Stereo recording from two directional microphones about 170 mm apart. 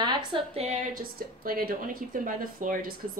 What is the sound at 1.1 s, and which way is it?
Speech, 60° right (ahead or behind).